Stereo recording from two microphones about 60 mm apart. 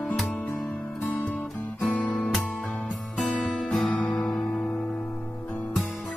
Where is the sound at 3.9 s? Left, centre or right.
Left.